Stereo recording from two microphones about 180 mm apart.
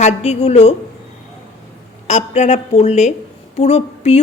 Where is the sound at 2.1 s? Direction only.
40° left (ahead or behind).